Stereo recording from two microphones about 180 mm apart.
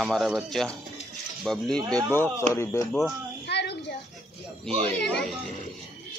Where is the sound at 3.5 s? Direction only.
70° left (ahead or behind).